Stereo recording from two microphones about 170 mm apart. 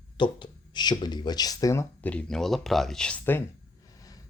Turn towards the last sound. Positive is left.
turn(degrees=10)  # may be behind; listen again after turning